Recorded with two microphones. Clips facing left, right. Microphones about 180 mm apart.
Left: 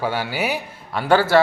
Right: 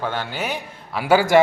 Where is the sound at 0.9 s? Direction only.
10° right (ahead or behind).